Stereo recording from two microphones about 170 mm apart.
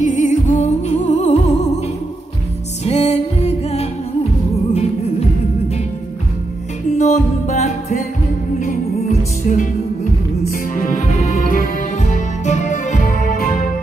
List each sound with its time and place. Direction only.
0.0 s music: 45° left (ahead or behind)
2.8 s music: 40° left (ahead or behind)
7.0 s music: 45° left (ahead or behind)